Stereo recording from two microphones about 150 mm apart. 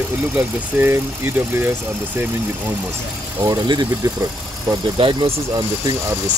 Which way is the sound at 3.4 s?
25° right (ahead or behind).